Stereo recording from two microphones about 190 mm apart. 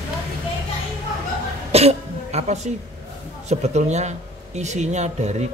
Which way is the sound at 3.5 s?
35° right (ahead or behind).